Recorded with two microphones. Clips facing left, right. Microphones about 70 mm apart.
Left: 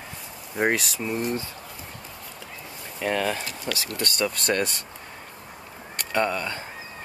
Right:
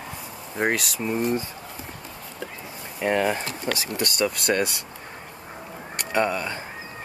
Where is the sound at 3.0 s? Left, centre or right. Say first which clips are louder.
Right 3 dB; centre.